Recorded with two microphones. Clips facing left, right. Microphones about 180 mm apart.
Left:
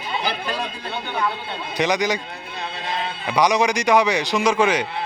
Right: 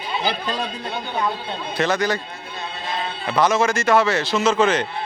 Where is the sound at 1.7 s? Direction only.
15° left (ahead or behind).